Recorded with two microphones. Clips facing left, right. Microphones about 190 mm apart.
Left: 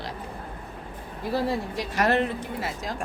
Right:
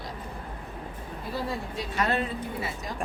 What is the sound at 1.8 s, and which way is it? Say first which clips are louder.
Speech: left 4 dB; 75° left (ahead or behind).